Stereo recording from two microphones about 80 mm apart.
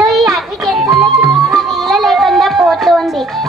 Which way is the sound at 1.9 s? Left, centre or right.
Centre.